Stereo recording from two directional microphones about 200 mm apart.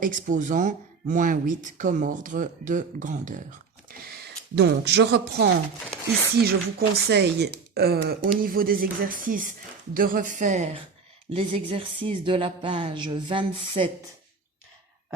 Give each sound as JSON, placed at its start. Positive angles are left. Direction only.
{"t": 0.0, "sound": "speech", "side_deg": -40}
{"t": 4.5, "sound": "speech", "side_deg": -55}